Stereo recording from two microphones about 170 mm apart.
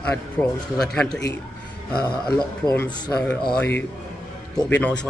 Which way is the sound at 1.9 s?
25° left (ahead or behind).